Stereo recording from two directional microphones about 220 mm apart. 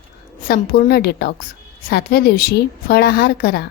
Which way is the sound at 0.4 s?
40° left (ahead or behind).